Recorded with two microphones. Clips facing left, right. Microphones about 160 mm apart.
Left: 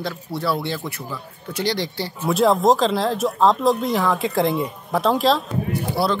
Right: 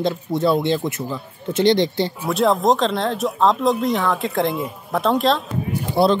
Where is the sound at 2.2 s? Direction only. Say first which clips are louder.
Left 2 dB; centre (ahead or behind).